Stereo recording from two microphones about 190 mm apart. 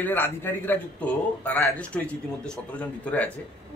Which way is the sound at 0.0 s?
10° left (ahead or behind).